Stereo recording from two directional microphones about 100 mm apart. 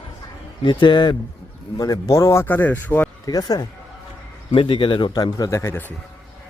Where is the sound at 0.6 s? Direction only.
55° left (ahead or behind).